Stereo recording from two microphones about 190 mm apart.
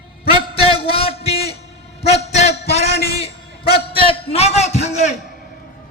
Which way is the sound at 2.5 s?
60° left (ahead or behind).